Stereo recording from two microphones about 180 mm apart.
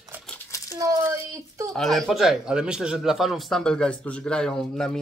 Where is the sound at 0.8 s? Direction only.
20° right (ahead or behind).